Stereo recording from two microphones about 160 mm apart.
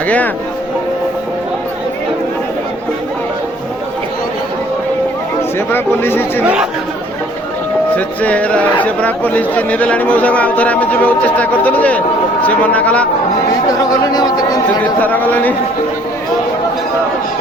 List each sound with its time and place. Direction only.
5.5 s speech: 15° left (ahead or behind)
7.9 s speech: 10° left (ahead or behind)
13.7 s chatter: 25° left (ahead or behind)
14.8 s speech: 10° left (ahead or behind)